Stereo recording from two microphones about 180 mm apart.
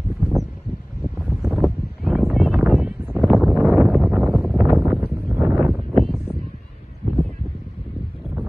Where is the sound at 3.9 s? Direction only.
Centre (ahead or behind).